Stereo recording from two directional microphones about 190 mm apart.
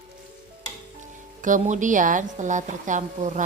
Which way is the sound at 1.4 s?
40° right (ahead or behind).